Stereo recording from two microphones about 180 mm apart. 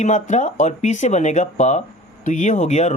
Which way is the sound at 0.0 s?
40° left (ahead or behind).